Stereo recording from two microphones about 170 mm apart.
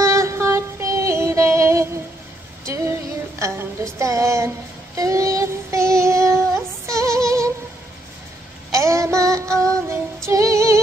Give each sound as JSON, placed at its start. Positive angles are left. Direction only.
{"t": 0.0, "sound": "a sound", "side_deg": -15}
{"t": 4.0, "sound": "speech", "side_deg": -20}
{"t": 4.9, "sound": "child singing", "side_deg": -20}
{"t": 8.7, "sound": "female singing", "side_deg": -15}